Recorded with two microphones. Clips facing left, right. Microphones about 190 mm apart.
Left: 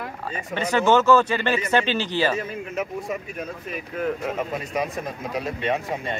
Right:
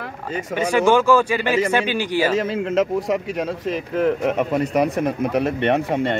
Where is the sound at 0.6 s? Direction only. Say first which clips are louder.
Right 3 dB; 10° right (ahead or behind).